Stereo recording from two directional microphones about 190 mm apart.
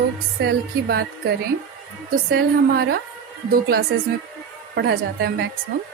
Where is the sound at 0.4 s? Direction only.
55° right (ahead or behind).